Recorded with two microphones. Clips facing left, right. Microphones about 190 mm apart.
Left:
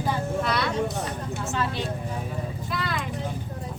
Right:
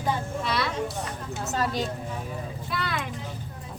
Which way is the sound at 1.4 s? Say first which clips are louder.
Right 2 dB; 40° right (ahead or behind).